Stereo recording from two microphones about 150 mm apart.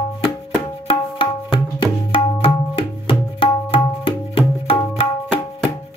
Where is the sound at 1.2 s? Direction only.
35° left (ahead or behind).